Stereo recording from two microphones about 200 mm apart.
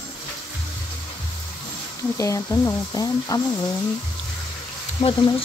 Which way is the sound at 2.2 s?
15° left (ahead or behind).